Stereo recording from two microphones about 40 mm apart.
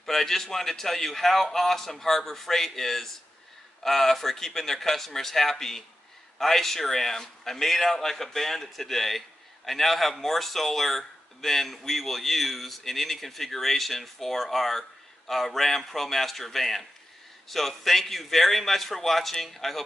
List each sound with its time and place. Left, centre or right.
0.0 s a man's voice: centre